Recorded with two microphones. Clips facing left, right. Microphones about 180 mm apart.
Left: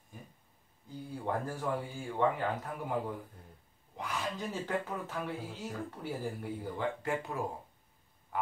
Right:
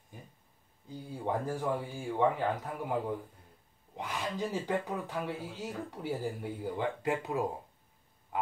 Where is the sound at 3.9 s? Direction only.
20° right (ahead or behind).